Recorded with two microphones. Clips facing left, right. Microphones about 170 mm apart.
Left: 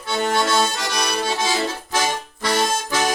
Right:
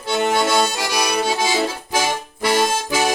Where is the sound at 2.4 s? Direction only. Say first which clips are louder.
Right 3 dB; 10° right (ahead or behind).